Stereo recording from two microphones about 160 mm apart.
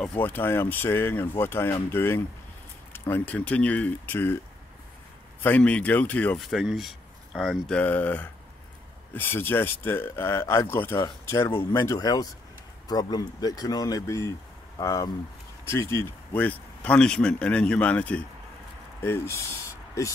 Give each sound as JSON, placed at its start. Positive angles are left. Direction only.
{"t": 0.2, "sound": "speech", "side_deg": 10}
{"t": 5.4, "sound": "speech", "side_deg": 10}